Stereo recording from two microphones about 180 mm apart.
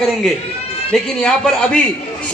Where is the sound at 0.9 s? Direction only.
5° left (ahead or behind).